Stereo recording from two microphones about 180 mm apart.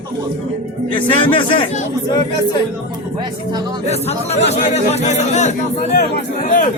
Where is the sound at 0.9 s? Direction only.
30° left (ahead or behind).